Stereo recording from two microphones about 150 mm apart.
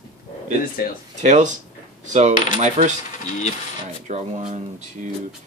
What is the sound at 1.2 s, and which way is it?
Speech, 55° right (ahead or behind).